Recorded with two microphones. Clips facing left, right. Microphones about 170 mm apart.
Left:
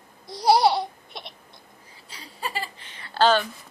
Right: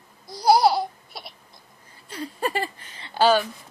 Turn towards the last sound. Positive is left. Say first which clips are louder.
# right 1 dB
turn(degrees=-10)  # may be behind; listen again after turning